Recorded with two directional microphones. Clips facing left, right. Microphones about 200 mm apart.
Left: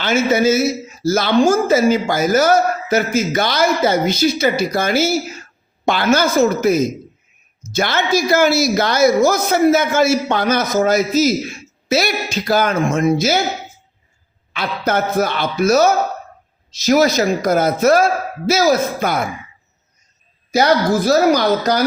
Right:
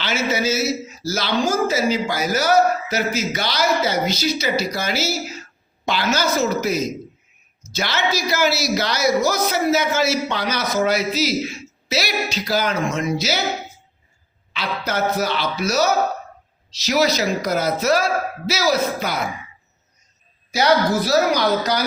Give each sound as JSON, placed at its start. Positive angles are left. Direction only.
{"t": 0.0, "sound": "a woman's voice", "side_deg": 50}
{"t": 14.5, "sound": "a woman's voice", "side_deg": 50}
{"t": 20.5, "sound": "a woman's voice", "side_deg": 50}